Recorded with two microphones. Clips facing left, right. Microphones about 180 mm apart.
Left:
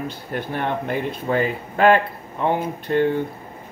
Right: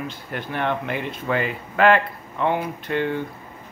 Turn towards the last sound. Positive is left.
turn(degrees=45)  # may be behind; listen again after turning